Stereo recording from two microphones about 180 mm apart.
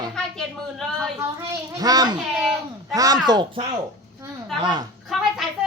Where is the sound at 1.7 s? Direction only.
20° right (ahead or behind).